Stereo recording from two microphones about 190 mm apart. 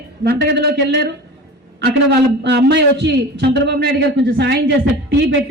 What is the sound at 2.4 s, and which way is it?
Speech, 65° right (ahead or behind).